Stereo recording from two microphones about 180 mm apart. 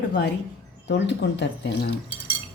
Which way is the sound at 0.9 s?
75° left (ahead or behind).